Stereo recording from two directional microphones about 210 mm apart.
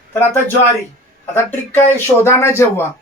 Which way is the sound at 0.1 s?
10° left (ahead or behind).